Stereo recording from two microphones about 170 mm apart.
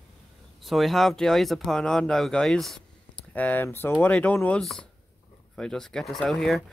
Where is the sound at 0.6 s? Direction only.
Centre (ahead or behind).